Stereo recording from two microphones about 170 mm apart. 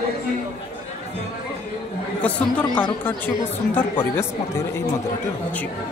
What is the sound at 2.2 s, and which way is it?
Speech, 10° left (ahead or behind).